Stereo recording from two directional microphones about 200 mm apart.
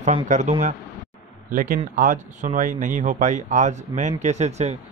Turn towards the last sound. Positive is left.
turn(degrees=-35)  # may be behind; listen again after turning